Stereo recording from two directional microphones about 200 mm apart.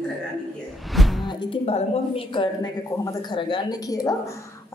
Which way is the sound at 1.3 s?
25° left (ahead or behind).